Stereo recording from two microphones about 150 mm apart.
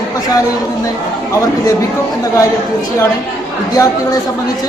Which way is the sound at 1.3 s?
20° left (ahead or behind).